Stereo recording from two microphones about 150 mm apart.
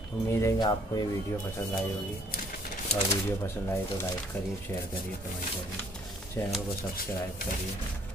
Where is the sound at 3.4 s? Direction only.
15° left (ahead or behind).